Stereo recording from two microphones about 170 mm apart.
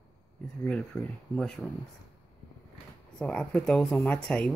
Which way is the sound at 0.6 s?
10° left (ahead or behind).